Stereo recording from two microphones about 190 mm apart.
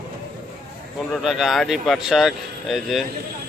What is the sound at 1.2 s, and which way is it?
Speech, centre (ahead or behind).